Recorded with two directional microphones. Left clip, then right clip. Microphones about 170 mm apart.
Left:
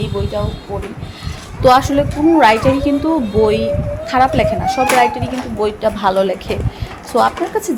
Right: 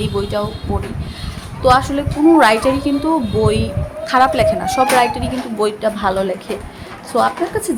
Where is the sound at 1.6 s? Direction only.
15° left (ahead or behind).